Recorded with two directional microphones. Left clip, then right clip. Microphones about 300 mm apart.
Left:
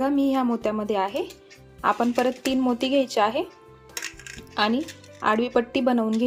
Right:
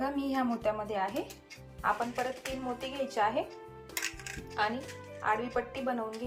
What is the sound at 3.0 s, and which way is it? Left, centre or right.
Speech, centre.